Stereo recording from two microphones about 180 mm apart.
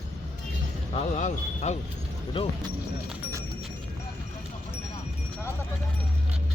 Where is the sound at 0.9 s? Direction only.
40° left (ahead or behind).